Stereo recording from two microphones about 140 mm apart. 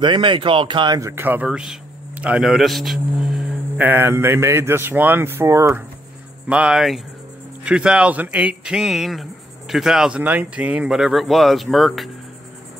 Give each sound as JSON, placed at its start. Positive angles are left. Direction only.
{"t": 0.0, "sound": "speech", "side_deg": -35}
{"t": 6.5, "sound": "speech", "side_deg": -5}